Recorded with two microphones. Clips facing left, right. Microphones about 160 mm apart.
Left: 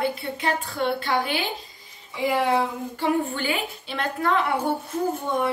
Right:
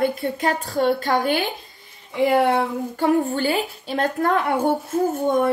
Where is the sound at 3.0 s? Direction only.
40° right (ahead or behind).